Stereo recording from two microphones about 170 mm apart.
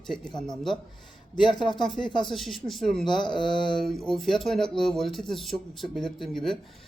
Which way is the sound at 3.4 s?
25° left (ahead or behind).